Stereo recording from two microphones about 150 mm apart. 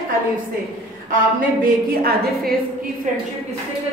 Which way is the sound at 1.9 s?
90° right.